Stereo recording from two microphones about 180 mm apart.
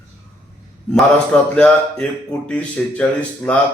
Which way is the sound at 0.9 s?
5° left (ahead or behind).